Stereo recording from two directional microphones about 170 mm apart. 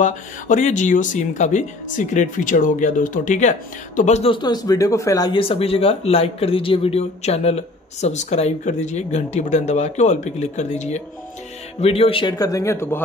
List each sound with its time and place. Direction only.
0.0 s a man's voice: 45° left (ahead or behind); by 13.0 s 15° left (ahead or behind)